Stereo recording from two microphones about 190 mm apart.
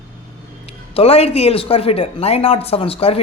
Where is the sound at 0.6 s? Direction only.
30° left (ahead or behind).